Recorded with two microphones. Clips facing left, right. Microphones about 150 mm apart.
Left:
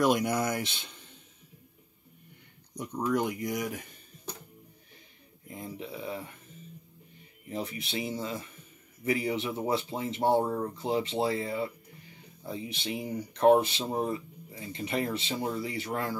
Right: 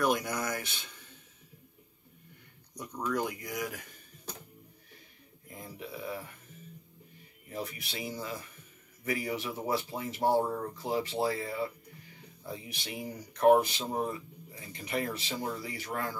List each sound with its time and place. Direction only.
0.0 s speech: 20° left (ahead or behind)
2.7 s speech: 20° left (ahead or behind)
5.5 s a sound: 25° left (ahead or behind)
7.4 s speech: 25° left (ahead or behind)